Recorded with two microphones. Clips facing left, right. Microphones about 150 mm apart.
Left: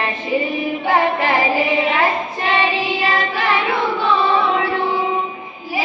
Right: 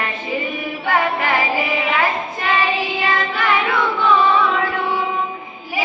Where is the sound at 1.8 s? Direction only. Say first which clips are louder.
Left 2 dB; 40° left (ahead or behind).